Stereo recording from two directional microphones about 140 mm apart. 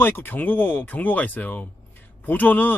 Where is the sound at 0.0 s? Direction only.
15° left (ahead or behind).